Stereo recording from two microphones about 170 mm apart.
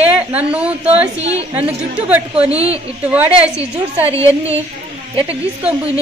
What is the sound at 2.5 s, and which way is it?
Speech, 35° right (ahead or behind).